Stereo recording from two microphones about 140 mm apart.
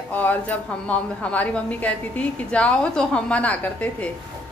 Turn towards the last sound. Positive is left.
turn(degrees=10)  # may be behind; listen again after turning